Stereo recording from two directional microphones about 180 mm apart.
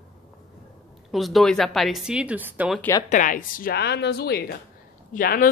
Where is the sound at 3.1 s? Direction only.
45° left (ahead or behind); by 4.5 s 65° left (ahead or behind).